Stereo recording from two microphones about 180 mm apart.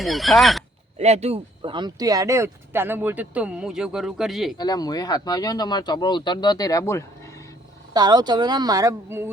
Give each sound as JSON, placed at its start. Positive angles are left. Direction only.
{"t": 0.0, "sound": "speech", "side_deg": 0}
{"t": 0.9, "sound": "speech", "side_deg": -35}
{"t": 4.5, "sound": "speech", "side_deg": 20}
{"t": 7.9, "sound": "speech", "side_deg": -25}